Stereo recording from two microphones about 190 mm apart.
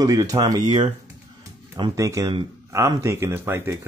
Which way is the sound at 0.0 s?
20° right (ahead or behind).